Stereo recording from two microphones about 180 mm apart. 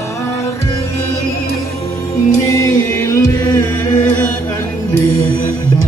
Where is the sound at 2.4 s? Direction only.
15° left (ahead or behind).